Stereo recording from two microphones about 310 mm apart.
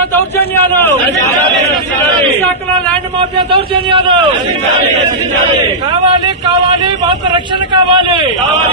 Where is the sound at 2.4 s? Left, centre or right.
Centre.